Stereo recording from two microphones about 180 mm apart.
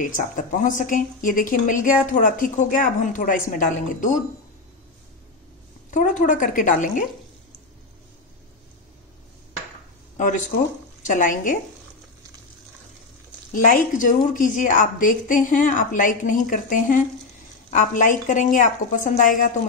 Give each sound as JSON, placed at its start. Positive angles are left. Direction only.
{"t": 0.0, "sound": "speech", "side_deg": 50}
{"t": 5.9, "sound": "speech", "side_deg": 45}
{"t": 10.1, "sound": "speech", "side_deg": 45}
{"t": 13.5, "sound": "speech", "side_deg": 45}